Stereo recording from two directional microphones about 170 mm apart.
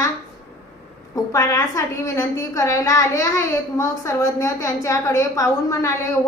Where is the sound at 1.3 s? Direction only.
20° left (ahead or behind).